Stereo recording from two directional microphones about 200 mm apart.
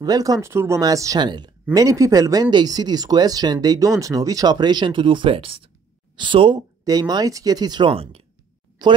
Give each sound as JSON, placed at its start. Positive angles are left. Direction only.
{"t": 0.0, "sound": "speech", "side_deg": -20}